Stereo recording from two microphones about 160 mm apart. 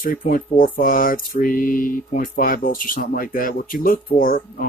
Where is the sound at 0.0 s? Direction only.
60° left (ahead or behind).